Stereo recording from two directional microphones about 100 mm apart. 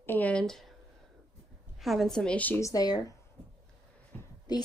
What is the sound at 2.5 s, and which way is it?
Speech, 35° left (ahead or behind).